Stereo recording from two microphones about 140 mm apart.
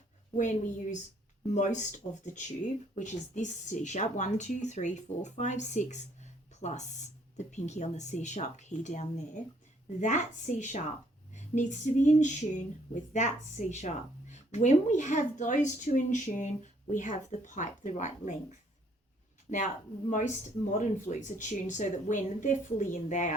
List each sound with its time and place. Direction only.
0.3 s speech: 60° left (ahead or behind)
19.5 s speech: 60° left (ahead or behind)